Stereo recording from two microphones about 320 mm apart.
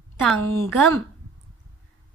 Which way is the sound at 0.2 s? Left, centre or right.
Centre.